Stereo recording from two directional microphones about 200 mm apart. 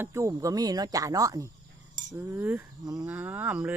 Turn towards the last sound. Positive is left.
turn(degrees=-10)  # may be behind; listen again after turning